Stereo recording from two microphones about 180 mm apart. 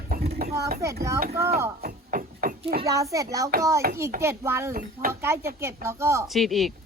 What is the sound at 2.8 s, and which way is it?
A child's voice, 20° right (ahead or behind).